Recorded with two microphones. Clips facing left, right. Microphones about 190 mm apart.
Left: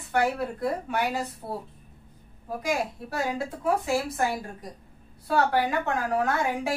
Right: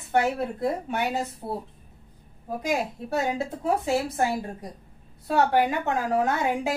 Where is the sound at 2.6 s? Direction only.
25° right (ahead or behind).